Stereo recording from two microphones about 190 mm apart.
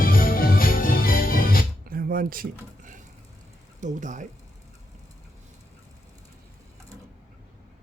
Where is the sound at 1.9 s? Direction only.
50° right (ahead or behind).